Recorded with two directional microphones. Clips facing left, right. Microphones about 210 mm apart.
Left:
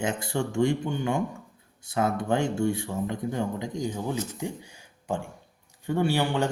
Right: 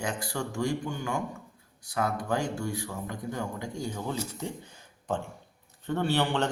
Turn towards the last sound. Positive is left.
turn(degrees=10)  # may be behind; listen again after turning